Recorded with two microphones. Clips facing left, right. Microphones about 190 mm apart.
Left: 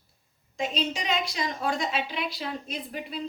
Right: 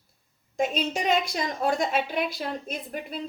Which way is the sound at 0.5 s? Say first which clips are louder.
Right 3 dB; 50° right (ahead or behind).